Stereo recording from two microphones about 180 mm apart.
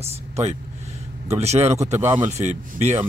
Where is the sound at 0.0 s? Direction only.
40° right (ahead or behind).